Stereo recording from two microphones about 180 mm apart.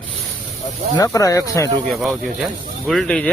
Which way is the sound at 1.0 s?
20° left (ahead or behind).